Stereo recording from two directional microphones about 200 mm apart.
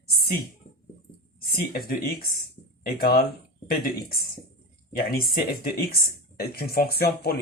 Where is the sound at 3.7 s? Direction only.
45° left (ahead or behind).